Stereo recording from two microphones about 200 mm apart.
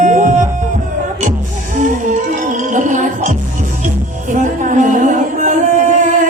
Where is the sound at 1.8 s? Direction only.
40° right (ahead or behind).